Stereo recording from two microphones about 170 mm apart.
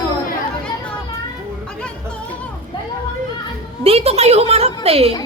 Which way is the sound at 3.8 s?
35° right (ahead or behind).